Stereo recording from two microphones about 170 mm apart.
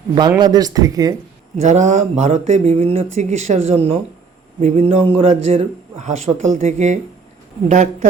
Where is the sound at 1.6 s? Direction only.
45° right (ahead or behind).